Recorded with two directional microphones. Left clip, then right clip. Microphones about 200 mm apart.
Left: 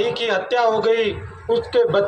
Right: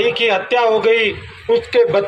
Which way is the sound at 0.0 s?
30° left (ahead or behind).